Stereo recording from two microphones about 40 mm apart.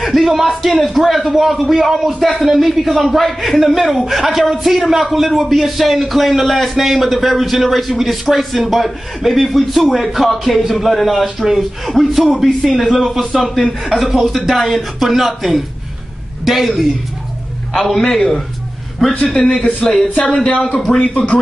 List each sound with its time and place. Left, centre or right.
0.0 s a man's voice: centre
17.7 s a man's voice: centre
19.3 s a man's voice: left
20.9 s a man's voice: centre